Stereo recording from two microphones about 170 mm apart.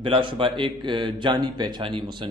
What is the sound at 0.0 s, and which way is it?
A man's voice, 30° right (ahead or behind).